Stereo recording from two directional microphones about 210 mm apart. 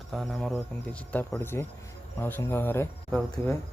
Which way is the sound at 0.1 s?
Centre (ahead or behind).